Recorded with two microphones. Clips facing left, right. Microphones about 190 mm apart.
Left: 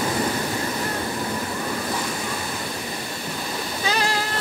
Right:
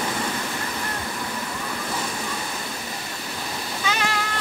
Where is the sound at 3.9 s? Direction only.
35° left (ahead or behind).